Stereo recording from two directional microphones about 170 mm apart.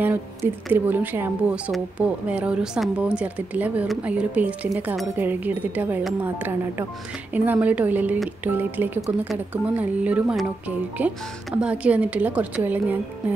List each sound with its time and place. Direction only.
0.7 s a woman's voice: 10° right (ahead or behind)